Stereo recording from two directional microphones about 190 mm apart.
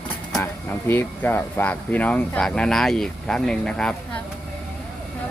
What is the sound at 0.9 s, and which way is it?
Speech, 10° left (ahead or behind).